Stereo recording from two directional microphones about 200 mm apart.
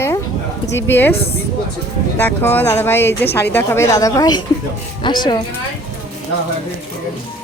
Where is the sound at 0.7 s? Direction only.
65° left (ahead or behind).